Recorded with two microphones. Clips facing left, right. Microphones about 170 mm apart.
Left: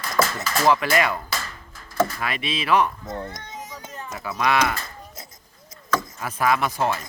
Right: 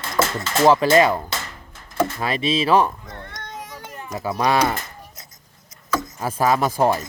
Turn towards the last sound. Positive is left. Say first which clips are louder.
# right 4 dB
turn(degrees=-35)  # may be behind; listen again after turning